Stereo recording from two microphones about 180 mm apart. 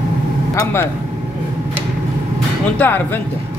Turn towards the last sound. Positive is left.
turn(degrees=10)  # may be behind; listen again after turning